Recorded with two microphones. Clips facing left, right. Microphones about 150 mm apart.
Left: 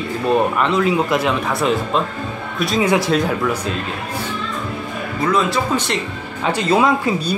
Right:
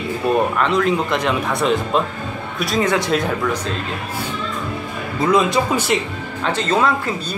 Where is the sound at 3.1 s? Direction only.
Centre (ahead or behind).